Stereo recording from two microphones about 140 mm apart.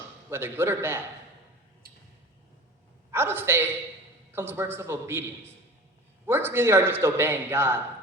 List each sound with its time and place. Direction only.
0.3 s a man's voice: 15° right (ahead or behind)
1.8 s a sound: 90° right
3.1 s a man's voice: 15° right (ahead or behind)